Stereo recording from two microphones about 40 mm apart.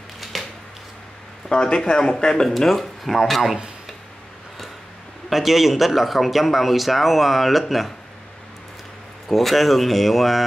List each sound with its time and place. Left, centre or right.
0.2 s a sound: centre
1.5 s speech: centre
2.6 s speech: centre
5.3 s speech: centre
9.3 s speech: centre